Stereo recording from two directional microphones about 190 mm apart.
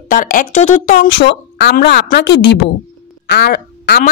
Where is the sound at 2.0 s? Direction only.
65° left (ahead or behind).